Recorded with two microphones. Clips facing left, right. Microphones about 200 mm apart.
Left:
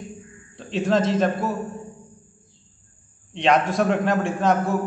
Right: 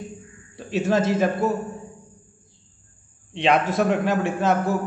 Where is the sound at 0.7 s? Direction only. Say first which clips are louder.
Even; 5° right (ahead or behind).